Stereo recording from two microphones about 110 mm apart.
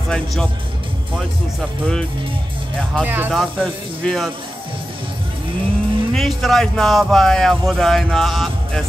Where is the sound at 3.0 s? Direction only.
15° right (ahead or behind).